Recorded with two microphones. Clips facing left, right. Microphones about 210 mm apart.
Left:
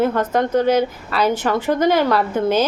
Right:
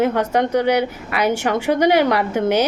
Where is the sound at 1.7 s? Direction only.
15° right (ahead or behind).